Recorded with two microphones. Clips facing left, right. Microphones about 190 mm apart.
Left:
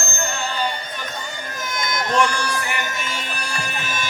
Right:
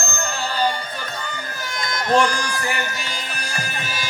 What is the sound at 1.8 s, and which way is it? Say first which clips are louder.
Run: right 2 dB; 35° right (ahead or behind).